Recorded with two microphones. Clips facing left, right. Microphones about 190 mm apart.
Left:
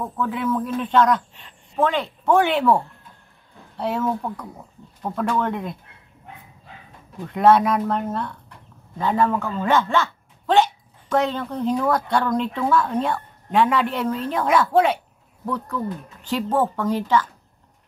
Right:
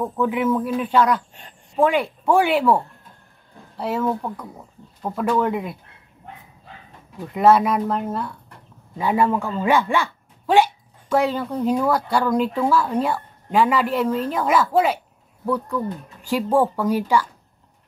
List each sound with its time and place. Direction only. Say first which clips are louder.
0.2 s speech: right 3 dB; 15° right (ahead or behind)
7.2 s speech: even; 5° right (ahead or behind)